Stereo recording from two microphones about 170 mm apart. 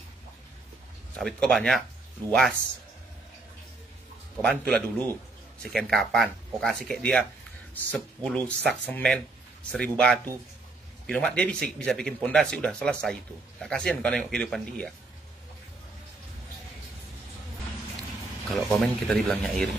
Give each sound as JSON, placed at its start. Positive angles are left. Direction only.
{"t": 1.1, "sound": "speech", "side_deg": 0}
{"t": 4.4, "sound": "speech", "side_deg": 5}
{"t": 18.5, "sound": "speech", "side_deg": 0}